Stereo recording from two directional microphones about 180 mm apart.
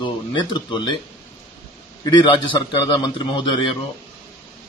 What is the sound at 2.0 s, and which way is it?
A man's voice, 25° left (ahead or behind).